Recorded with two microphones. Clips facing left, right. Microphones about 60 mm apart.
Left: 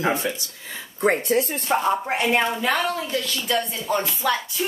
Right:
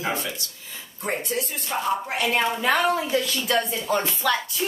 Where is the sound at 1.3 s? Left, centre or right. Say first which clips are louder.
Left 7 dB; left.